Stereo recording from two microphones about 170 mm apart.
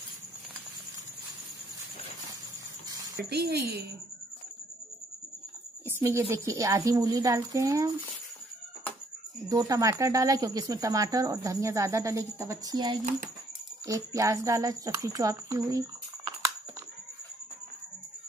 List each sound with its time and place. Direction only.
3.3 s speech: 70° right (ahead or behind)
5.9 s speech: 15° right (ahead or behind)
9.5 s speech: 20° right (ahead or behind)